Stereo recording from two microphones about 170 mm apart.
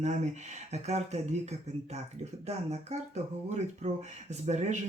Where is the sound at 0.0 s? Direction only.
45° right (ahead or behind).